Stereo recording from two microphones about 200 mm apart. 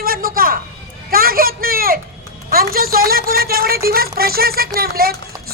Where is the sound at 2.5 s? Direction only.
45° right (ahead or behind).